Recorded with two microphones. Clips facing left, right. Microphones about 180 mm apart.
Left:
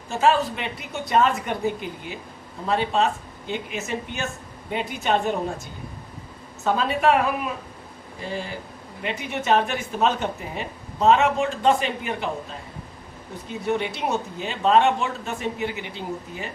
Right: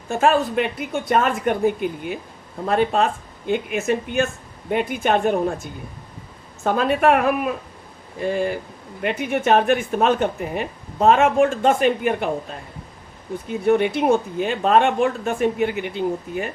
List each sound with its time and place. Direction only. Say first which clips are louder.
0.1 s speech: right 3 dB; 50° right (ahead or behind)
6.7 s speech: right 3 dB; 55° right (ahead or behind)
13.5 s speech: right 7 dB; 55° right (ahead or behind)